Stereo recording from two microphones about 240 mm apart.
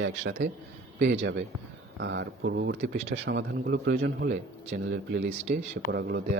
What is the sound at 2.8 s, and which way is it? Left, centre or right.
Speech, right.